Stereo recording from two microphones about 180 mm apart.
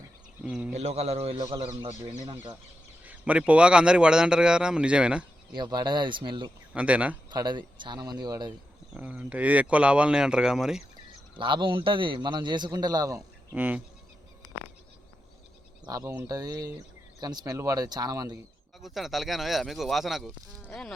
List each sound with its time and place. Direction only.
0.4 s speech: 5° right (ahead or behind)
0.7 s a man's voice: 35° right (ahead or behind)
3.0 s a man's voice: 10° right (ahead or behind)
5.5 s a man's voice: 25° right (ahead or behind)
6.7 s speech: 5° right (ahead or behind)
7.3 s a man's voice: 25° right (ahead or behind)
8.9 s a man's voice: 5° right (ahead or behind)
11.3 s a man's voice: 25° right (ahead or behind)
13.5 s speech: 10° right (ahead or behind)
15.9 s a man's voice: 15° right (ahead or behind)
18.8 s a man's voice: centre (ahead or behind)